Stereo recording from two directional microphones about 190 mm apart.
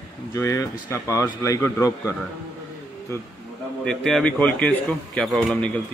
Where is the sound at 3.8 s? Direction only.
5° left (ahead or behind).